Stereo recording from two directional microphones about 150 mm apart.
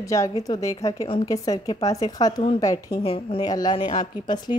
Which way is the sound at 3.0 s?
40° left (ahead or behind).